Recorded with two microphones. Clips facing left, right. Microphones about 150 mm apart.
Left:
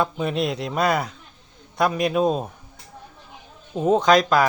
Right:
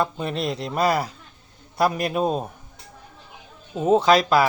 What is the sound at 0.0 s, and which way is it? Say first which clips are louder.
Speech: left 2 dB; centre (ahead or behind).